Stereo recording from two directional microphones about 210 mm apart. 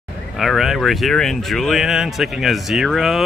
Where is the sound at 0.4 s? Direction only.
Centre (ahead or behind).